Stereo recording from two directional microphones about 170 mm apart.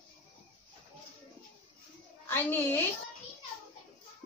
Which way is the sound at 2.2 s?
10° left (ahead or behind).